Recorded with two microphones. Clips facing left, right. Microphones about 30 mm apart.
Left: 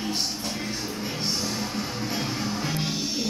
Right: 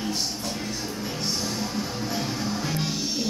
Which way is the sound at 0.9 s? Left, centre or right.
Centre.